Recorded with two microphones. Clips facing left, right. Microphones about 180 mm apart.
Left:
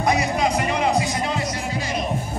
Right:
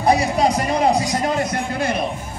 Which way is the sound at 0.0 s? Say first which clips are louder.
Right 4 dB; 35° right (ahead or behind).